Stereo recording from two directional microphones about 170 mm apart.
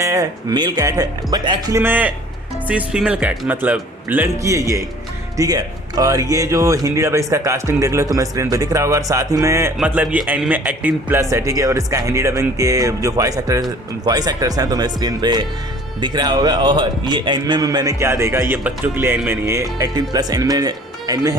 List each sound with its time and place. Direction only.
0.0 s speech: 20° right (ahead or behind)